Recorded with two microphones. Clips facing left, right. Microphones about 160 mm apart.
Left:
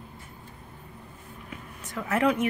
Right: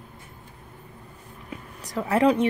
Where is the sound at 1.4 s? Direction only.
35° right (ahead or behind).